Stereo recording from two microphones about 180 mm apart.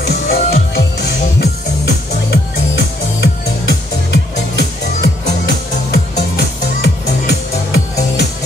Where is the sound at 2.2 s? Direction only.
65° left (ahead or behind).